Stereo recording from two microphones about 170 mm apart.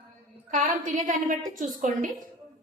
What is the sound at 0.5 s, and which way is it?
A woman's voice, 50° right (ahead or behind).